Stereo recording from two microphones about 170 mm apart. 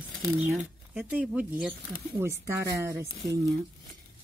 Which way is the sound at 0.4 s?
10° right (ahead or behind).